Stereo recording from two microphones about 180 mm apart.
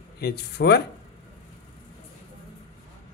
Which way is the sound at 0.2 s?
65° left (ahead or behind).